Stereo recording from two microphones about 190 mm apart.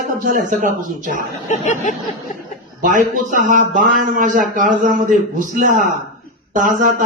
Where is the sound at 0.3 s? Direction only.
45° right (ahead or behind).